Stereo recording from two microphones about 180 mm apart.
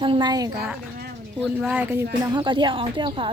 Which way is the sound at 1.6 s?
10° right (ahead or behind).